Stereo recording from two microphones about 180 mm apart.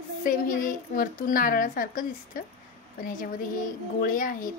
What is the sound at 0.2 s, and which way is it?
A woman's voice, 50° left (ahead or behind).